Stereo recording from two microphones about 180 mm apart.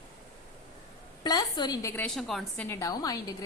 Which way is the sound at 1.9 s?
5° left (ahead or behind).